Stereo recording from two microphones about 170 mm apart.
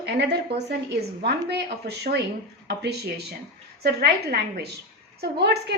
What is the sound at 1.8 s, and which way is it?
A woman's voice, 75° right (ahead or behind).